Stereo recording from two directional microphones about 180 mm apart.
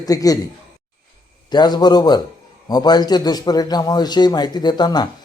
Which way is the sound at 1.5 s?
25° left (ahead or behind).